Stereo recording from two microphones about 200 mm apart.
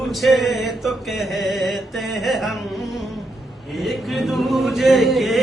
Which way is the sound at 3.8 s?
Centre (ahead or behind).